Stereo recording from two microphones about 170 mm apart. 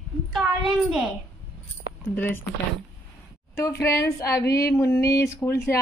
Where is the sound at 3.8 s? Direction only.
20° left (ahead or behind).